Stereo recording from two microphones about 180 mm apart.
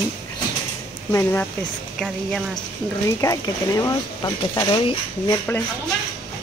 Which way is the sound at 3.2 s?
20° left (ahead or behind).